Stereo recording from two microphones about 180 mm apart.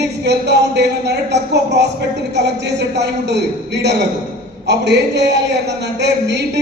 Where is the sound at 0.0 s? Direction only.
70° right (ahead or behind).